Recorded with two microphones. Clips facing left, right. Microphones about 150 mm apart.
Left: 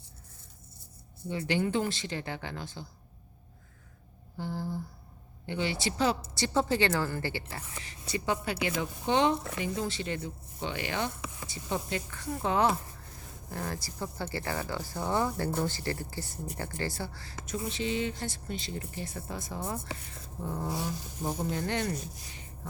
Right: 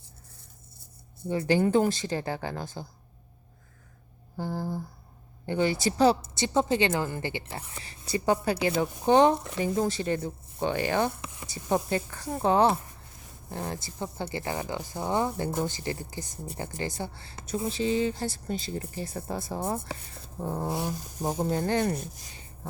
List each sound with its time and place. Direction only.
1.3 s speech: 40° right (ahead or behind)
4.4 s speech: 45° right (ahead or behind)
6.3 s speech: 20° right (ahead or behind)
7.8 s speech: 35° right (ahead or behind)
13.5 s speech: 20° right (ahead or behind)
20.8 s speech: 40° right (ahead or behind)